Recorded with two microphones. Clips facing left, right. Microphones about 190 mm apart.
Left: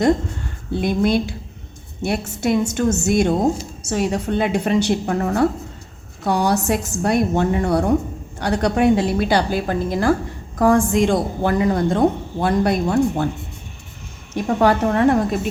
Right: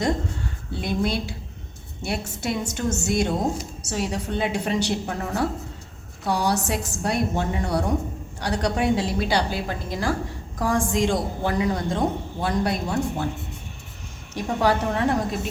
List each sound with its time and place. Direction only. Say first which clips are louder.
0.8 s a woman's voice: left 7 dB; 55° left (ahead or behind)
14.3 s a woman's voice: left 5 dB; 55° left (ahead or behind)